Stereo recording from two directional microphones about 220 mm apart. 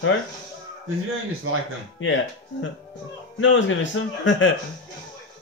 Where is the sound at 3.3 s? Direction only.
60° left (ahead or behind).